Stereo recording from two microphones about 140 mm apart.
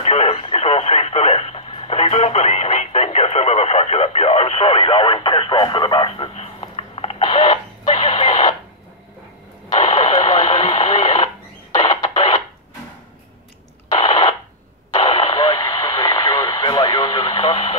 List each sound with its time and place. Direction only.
0.0 s radio: 45° left (ahead or behind)
9.7 s radio: 45° left (ahead or behind)
11.7 s music: 50° left (ahead or behind)
13.9 s radio: 45° left (ahead or behind)